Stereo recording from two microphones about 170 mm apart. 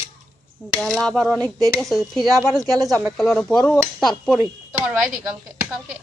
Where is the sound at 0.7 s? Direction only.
Centre (ahead or behind).